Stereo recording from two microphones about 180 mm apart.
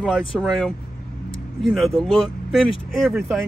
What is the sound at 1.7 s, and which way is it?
Speech, centre (ahead or behind).